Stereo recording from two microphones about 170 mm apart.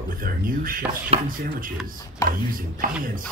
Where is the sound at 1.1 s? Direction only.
35° right (ahead or behind).